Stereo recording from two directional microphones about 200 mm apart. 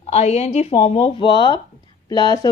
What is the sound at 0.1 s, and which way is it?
A woman's voice, 35° left (ahead or behind).